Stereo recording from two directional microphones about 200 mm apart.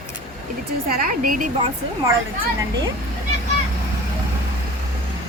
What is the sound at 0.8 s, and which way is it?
Speech, 45° right (ahead or behind).